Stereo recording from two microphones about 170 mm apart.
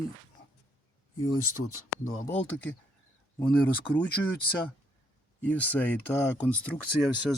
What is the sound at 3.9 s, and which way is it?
Speech, 25° left (ahead or behind).